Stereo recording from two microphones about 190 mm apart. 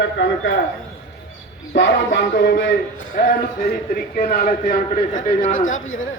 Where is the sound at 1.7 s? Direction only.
70° left (ahead or behind).